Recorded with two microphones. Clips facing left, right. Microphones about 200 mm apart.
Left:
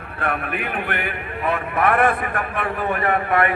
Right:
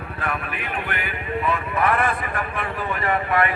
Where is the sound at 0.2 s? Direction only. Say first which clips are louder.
Left 5 dB; 60° left (ahead or behind).